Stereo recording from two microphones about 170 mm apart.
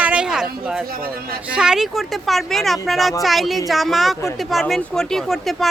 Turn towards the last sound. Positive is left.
turn(degrees=0)  # may be behind; listen again after turning